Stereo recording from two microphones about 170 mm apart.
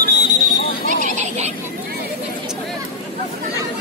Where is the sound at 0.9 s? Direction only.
45° right (ahead or behind).